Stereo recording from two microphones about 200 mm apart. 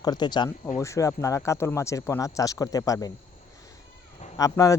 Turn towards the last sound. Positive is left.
turn(degrees=15)  # may be behind; listen again after turning